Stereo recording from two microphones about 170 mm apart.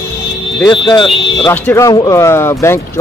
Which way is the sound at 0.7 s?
30° left (ahead or behind).